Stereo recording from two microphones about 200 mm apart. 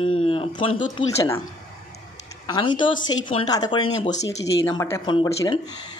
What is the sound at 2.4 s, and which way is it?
Speech, 20° left (ahead or behind).